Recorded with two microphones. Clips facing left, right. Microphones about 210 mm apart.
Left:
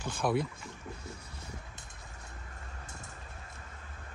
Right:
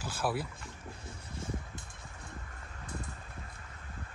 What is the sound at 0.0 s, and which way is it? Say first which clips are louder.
Speech: left 3 dB; 5° right (ahead or behind).